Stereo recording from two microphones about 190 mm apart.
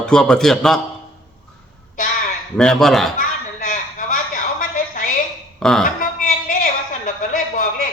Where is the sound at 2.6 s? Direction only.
5° left (ahead or behind).